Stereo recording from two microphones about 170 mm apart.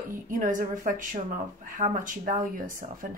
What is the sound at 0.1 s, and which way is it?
Speech, 50° right (ahead or behind).